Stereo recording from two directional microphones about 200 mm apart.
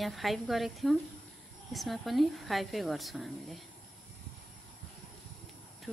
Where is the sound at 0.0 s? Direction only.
Centre (ahead or behind).